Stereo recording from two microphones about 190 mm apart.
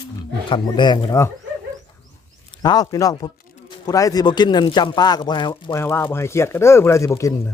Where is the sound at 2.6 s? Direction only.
20° left (ahead or behind).